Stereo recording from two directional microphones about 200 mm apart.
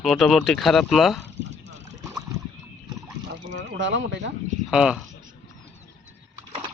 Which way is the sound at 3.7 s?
65° right (ahead or behind).